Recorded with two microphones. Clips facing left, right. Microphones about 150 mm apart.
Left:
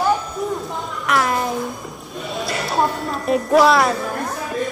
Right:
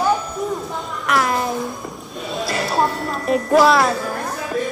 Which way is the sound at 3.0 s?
Centre (ahead or behind).